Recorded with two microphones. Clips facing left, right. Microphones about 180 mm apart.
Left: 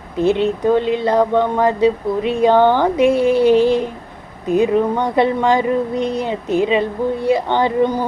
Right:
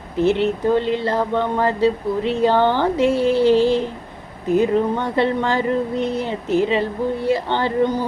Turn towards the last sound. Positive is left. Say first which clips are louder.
# left 3 dB
turn(degrees=15)  # may be behind; listen again after turning